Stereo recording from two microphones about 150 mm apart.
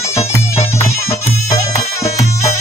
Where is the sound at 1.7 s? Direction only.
20° left (ahead or behind).